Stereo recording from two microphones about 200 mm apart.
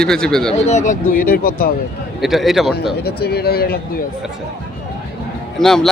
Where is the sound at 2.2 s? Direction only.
Centre (ahead or behind).